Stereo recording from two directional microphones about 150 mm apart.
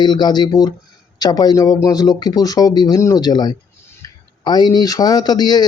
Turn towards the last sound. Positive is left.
turn(degrees=25)  # may be behind; listen again after turning